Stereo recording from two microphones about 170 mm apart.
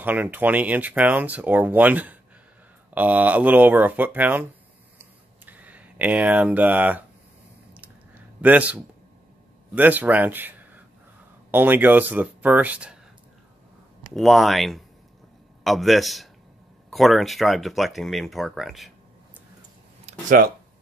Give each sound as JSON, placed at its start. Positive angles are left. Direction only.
{"t": 0.0, "sound": "speech", "side_deg": -10}
{"t": 4.9, "sound": "a sound", "side_deg": -10}
{"t": 9.8, "sound": "speech", "side_deg": -10}
{"t": 14.1, "sound": "speech", "side_deg": 0}
{"t": 20.1, "sound": "speech", "side_deg": -55}